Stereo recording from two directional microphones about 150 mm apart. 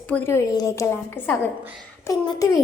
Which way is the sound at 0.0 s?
10° left (ahead or behind).